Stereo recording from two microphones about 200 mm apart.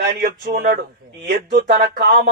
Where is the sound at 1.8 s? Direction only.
45° right (ahead or behind).